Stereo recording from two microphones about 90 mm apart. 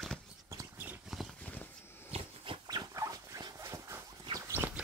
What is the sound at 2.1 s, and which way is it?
Dog, 85° right.